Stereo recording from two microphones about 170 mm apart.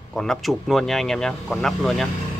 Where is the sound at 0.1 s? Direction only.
Centre (ahead or behind).